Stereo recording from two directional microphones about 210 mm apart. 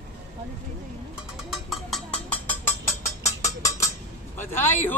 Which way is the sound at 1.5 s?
Centre (ahead or behind).